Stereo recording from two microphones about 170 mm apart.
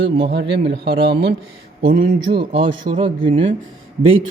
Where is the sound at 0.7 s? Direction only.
75° right (ahead or behind).